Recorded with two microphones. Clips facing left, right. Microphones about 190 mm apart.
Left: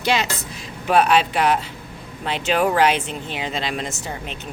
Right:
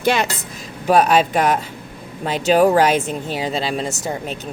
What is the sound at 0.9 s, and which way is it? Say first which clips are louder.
Speech: right 3 dB; 40° right (ahead or behind).